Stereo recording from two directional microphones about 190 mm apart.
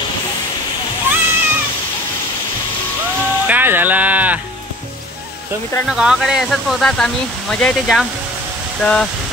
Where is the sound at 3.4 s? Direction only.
10° right (ahead or behind).